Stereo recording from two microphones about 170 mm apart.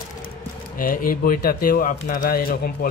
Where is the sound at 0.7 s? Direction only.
55° left (ahead or behind).